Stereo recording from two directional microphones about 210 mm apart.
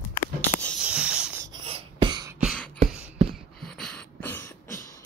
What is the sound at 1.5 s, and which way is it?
Beatboxing, 25° right (ahead or behind).